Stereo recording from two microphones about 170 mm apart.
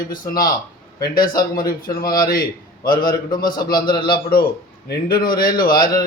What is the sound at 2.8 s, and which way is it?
A man's voice, 55° left (ahead or behind).